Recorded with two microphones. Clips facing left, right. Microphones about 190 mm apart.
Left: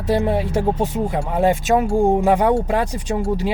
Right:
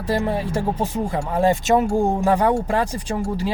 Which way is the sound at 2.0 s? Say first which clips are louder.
Left 3 dB; 15° left (ahead or behind).